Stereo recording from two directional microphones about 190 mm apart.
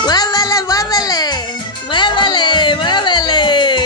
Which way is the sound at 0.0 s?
20° left (ahead or behind).